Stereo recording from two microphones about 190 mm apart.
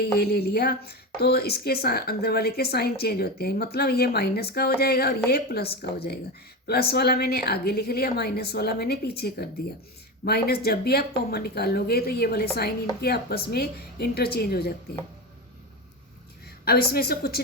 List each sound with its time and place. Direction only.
0.0 s a woman's voice: 55° left (ahead or behind)
16.6 s a woman's voice: 55° left (ahead or behind)